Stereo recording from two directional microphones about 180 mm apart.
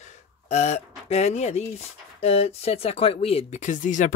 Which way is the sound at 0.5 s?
40° left (ahead or behind).